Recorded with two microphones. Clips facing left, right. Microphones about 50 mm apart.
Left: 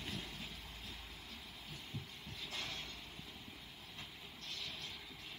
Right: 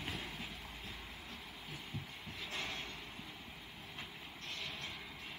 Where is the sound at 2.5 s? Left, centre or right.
Centre.